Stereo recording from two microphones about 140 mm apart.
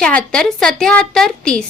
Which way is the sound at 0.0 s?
10° left (ahead or behind).